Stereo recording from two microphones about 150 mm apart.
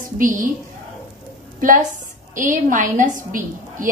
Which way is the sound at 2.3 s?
60° right (ahead or behind).